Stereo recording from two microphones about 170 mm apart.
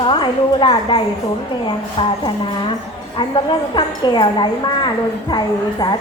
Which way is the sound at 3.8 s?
25° left (ahead or behind).